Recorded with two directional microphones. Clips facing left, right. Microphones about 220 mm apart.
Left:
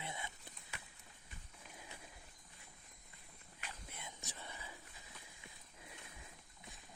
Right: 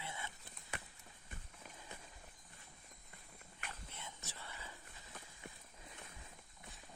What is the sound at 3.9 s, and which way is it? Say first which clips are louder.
Whispering: even; 15° left (ahead or behind).